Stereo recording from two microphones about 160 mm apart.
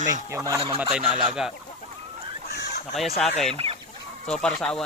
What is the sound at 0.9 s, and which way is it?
Speech, 5° right (ahead or behind).